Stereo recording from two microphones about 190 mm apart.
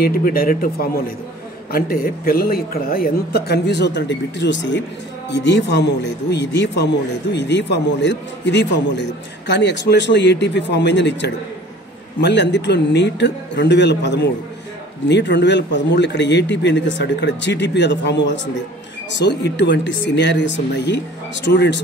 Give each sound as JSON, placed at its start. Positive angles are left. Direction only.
{"t": 0.0, "sound": "a man's voice", "side_deg": 50}